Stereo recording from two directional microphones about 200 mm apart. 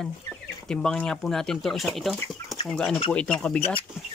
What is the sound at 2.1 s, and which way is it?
Speech, 20° left (ahead or behind).